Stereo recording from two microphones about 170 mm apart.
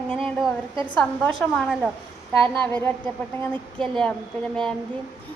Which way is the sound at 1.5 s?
Centre (ahead or behind).